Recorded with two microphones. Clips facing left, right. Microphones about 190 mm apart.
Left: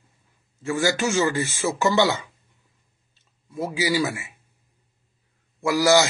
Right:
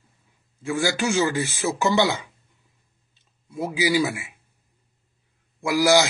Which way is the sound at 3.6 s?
15° right (ahead or behind).